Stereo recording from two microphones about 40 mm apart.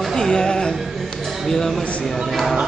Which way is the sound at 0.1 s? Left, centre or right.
Centre.